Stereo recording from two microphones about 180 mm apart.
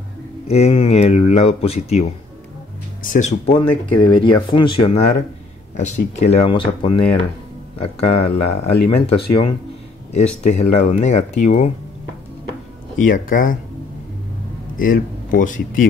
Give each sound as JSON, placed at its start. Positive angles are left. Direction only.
{"t": 0.5, "sound": "speech", "side_deg": 35}
{"t": 3.0, "sound": "speech", "side_deg": 50}
{"t": 3.4, "sound": "speech", "side_deg": 30}
{"t": 5.8, "sound": "speech", "side_deg": 40}
{"t": 6.4, "sound": "speech", "side_deg": 30}
{"t": 8.0, "sound": "speech", "side_deg": 35}
{"t": 13.0, "sound": "speech", "side_deg": 50}
{"t": 14.8, "sound": "speech", "side_deg": 50}